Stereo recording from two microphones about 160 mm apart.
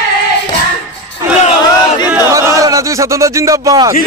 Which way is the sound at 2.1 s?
15° right (ahead or behind).